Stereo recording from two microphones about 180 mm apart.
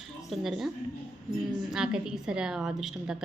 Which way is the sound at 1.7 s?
5° right (ahead or behind).